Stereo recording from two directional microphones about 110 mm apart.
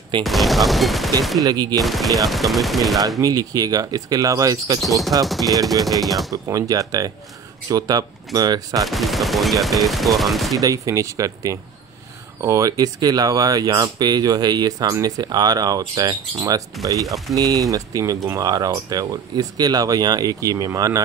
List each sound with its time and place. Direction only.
0.2 s speech: centre (ahead or behind)
1.4 s speech: 40° right (ahead or behind)
1.8 s speech: centre (ahead or behind)
3.2 s speech: 35° right (ahead or behind)
5.2 s speech: centre (ahead or behind)
5.5 s speech: 35° right (ahead or behind)
8.8 s speech: centre (ahead or behind)
10.6 s speech: 30° right (ahead or behind)